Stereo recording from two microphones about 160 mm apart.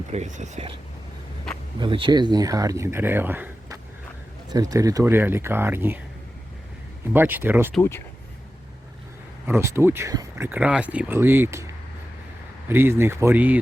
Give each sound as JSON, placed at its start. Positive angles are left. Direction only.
{"t": 0.1, "sound": "speech", "side_deg": -45}
{"t": 1.8, "sound": "speech", "side_deg": -30}
{"t": 7.1, "sound": "speech", "side_deg": -15}
{"t": 7.8, "sound": "speech", "side_deg": 15}
{"t": 9.5, "sound": "speech", "side_deg": -15}